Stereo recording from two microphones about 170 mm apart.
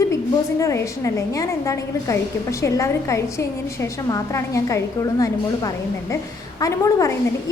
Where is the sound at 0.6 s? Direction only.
20° left (ahead or behind).